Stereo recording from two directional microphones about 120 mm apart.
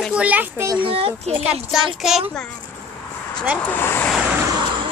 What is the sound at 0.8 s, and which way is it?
Speech, 55° right (ahead or behind).